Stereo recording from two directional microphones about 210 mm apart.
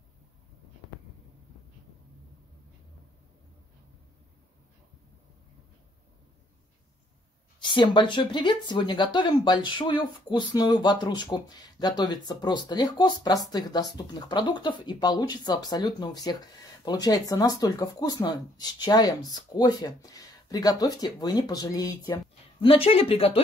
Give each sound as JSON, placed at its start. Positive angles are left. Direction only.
{"t": 7.6, "sound": "speech", "side_deg": 20}